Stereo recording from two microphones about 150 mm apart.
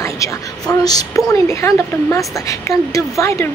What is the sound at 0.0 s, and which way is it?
A woman's voice, 20° left (ahead or behind).